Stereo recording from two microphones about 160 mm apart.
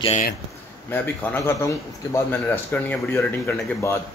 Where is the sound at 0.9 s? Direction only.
15° left (ahead or behind).